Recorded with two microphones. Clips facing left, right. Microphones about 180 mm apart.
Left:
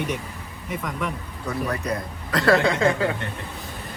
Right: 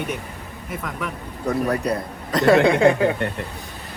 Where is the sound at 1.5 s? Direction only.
40° right (ahead or behind).